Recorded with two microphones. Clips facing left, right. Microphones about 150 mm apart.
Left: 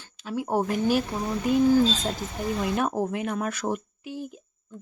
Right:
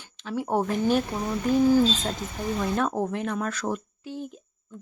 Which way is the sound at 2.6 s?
10° left (ahead or behind).